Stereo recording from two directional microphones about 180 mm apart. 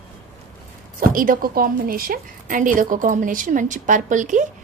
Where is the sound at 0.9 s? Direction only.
50° right (ahead or behind).